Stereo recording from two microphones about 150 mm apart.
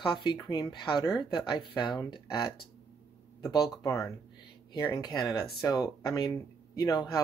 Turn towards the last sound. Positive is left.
turn(degrees=25)  # may be behind; listen again after turning